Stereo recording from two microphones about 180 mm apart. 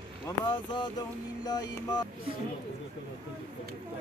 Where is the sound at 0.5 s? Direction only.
25° left (ahead or behind).